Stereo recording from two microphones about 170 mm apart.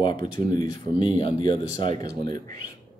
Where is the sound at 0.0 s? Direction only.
25° left (ahead or behind).